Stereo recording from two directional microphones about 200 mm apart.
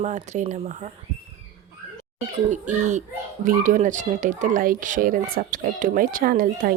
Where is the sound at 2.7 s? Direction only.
35° right (ahead or behind).